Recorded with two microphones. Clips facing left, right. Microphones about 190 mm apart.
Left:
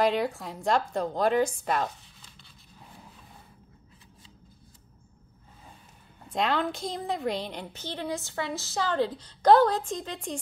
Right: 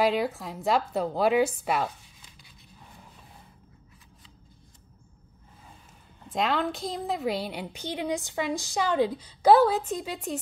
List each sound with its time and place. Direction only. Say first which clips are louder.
0.0 s a woman's voice: even; centre (ahead or behind)
6.2 s a woman's voice: even; centre (ahead or behind)